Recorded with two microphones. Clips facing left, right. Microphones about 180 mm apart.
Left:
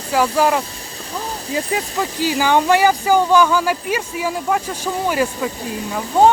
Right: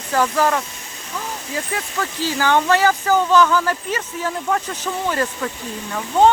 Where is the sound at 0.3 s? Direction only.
10° left (ahead or behind).